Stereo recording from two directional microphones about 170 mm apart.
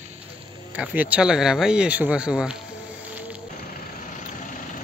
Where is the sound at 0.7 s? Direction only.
10° right (ahead or behind).